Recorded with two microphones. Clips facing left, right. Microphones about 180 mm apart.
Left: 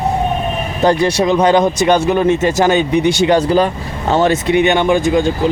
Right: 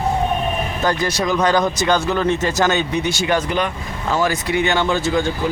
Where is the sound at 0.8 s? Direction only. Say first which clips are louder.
Left 8 dB; 30° left (ahead or behind); by 3.1 s 15° left (ahead or behind).